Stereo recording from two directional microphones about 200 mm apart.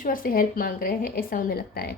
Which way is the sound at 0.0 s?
45° left (ahead or behind).